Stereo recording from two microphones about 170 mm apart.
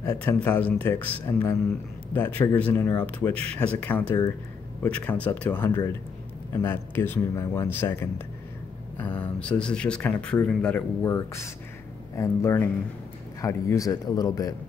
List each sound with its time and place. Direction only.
0.2 s speech: 10° left (ahead or behind)